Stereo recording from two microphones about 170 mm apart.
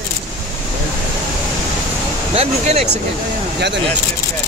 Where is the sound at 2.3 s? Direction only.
35° right (ahead or behind).